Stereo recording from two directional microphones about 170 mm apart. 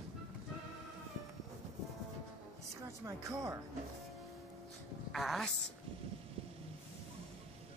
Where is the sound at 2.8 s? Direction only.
20° right (ahead or behind).